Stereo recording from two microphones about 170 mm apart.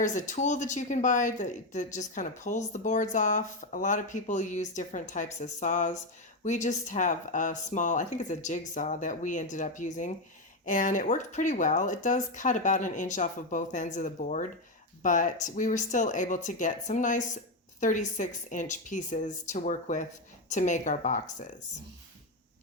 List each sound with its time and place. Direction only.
0.0 s speech: 45° left (ahead or behind)